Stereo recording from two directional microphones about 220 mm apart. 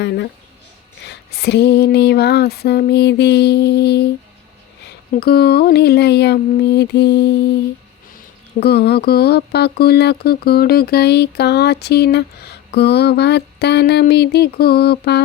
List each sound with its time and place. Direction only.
0.0 s a sound: 50° left (ahead or behind)
1.0 s speech: 45° left (ahead or behind)
5.1 s speech: 45° left (ahead or behind)
8.6 s speech: 45° left (ahead or behind)